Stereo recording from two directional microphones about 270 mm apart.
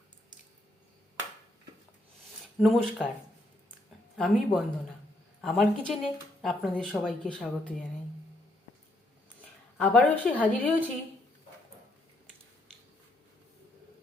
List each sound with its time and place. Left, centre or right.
2.6 s speech: centre
4.2 s speech: centre
9.7 s speech: centre